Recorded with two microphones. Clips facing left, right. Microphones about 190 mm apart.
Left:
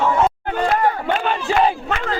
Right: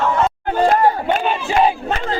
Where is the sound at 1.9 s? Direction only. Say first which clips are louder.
Right 2 dB; 35° right (ahead or behind).